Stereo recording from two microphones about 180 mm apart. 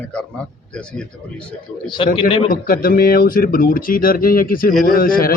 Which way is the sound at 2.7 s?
55° left (ahead or behind).